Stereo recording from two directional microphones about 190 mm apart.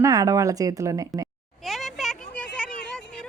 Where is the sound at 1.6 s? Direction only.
Centre (ahead or behind).